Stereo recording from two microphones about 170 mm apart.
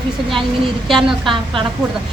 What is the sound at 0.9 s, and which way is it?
Speech, centre (ahead or behind).